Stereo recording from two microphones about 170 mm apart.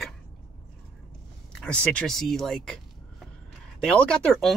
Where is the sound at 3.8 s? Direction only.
5° left (ahead or behind).